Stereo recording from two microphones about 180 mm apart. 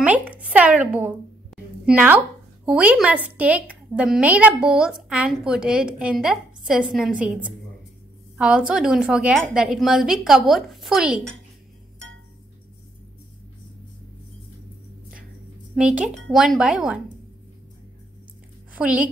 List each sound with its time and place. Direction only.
0.0 s a woman's voice: 10° right (ahead or behind)
8.4 s a woman's voice: 5° right (ahead or behind)
15.7 s a woman's voice: 5° right (ahead or behind)
18.7 s a woman's voice: 5° right (ahead or behind)